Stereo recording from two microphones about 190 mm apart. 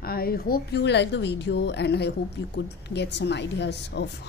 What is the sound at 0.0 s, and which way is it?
Speech, 50° left (ahead or behind).